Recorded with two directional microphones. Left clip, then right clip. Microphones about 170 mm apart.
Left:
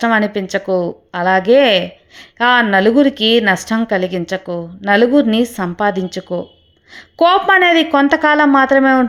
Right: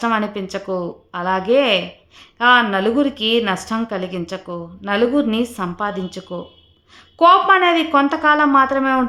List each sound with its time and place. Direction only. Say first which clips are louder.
0.0 s a woman's voice: left 5 dB; 25° left (ahead or behind)